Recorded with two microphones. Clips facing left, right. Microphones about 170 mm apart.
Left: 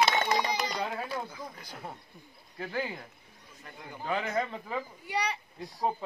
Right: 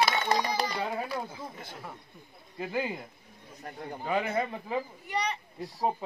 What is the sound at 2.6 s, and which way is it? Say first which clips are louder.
Speech: right 2 dB; 15° right (ahead or behind).